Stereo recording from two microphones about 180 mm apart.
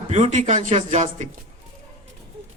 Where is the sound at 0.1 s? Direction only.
45° right (ahead or behind).